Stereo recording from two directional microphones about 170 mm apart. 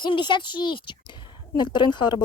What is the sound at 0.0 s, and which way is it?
Speech, 30° left (ahead or behind).